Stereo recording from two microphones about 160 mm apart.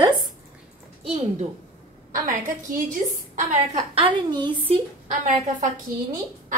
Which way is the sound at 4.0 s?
30° right (ahead or behind).